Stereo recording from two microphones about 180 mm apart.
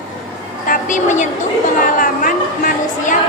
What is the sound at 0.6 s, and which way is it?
A woman's voice, 45° left (ahead or behind).